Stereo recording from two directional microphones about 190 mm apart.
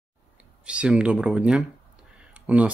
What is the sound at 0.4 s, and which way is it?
Speech, 5° right (ahead or behind).